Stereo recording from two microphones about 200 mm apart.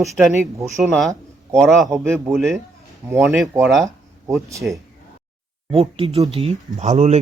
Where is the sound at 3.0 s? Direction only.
15° right (ahead or behind).